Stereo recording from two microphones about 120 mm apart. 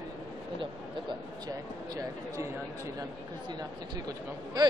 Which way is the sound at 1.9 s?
25° right (ahead or behind).